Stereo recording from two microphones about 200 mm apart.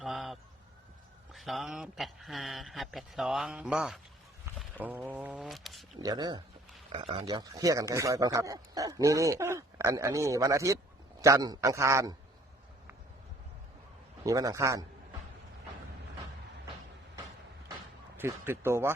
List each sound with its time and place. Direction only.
0.0 s a sound: centre (ahead or behind)
1.3 s speech: centre (ahead or behind)
6.0 s speech: 20° right (ahead or behind)
14.3 s speech: 15° right (ahead or behind)
18.2 s speech: 10° right (ahead or behind)